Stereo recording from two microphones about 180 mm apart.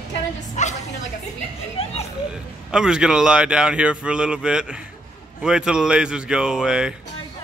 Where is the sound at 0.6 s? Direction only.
40° left (ahead or behind).